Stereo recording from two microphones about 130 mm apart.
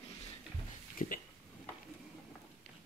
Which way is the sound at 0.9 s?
90° left.